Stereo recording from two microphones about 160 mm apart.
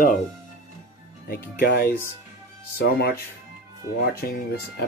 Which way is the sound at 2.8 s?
80° left.